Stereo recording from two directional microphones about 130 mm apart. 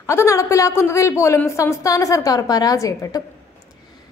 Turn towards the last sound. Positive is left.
turn(degrees=25)  # may be behind; listen again after turning